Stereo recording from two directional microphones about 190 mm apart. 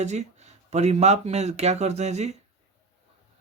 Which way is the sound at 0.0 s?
35° right (ahead or behind).